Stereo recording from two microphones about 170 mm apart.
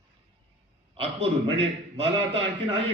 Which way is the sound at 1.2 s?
35° right (ahead or behind).